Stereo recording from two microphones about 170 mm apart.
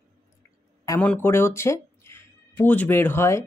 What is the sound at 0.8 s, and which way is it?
Speech, 20° left (ahead or behind).